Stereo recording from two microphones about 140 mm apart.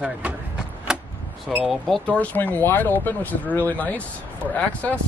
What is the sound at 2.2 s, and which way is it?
Speech, 10° left (ahead or behind).